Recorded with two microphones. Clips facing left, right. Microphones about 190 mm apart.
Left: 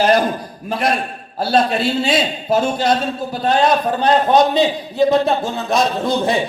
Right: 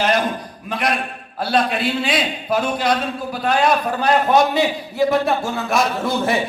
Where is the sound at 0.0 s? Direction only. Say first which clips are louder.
Left 4 dB; 35° left (ahead or behind).